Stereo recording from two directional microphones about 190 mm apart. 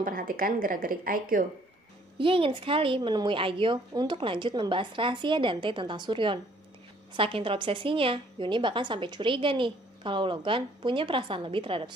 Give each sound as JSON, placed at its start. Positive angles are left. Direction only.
{"t": 0.0, "sound": "speech", "side_deg": -50}
{"t": 2.1, "sound": "a woman's voice", "side_deg": -30}